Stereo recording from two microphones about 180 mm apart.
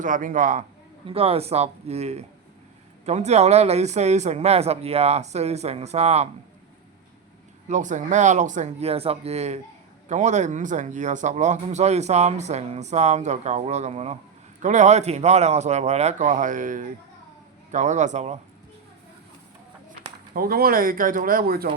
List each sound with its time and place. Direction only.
0.0 s speech: 45° right (ahead or behind)
1.0 s speech: 30° right (ahead or behind)
7.7 s speech: 45° right (ahead or behind)
20.3 s speech: 55° right (ahead or behind)